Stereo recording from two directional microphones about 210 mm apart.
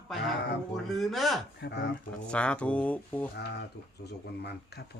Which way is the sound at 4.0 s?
50° left (ahead or behind).